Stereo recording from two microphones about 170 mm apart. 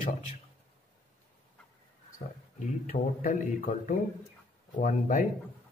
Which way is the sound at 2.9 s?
50° left (ahead or behind).